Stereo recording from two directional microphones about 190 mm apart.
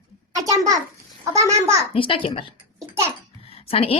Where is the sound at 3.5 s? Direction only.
30° left (ahead or behind).